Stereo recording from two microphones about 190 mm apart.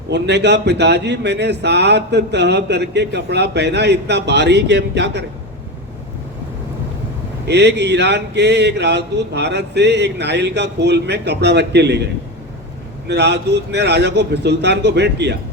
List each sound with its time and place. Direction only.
0.1 s a man's voice: 65° right (ahead or behind)
7.4 s a man's voice: 65° right (ahead or behind)
13.1 s a man's voice: 60° right (ahead or behind)